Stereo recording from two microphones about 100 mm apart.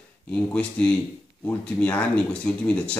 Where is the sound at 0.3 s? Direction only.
10° left (ahead or behind).